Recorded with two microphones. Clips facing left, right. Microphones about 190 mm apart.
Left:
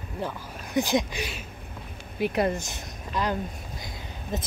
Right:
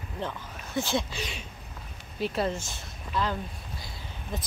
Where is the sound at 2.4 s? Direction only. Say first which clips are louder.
Left 4 dB; 15° left (ahead or behind).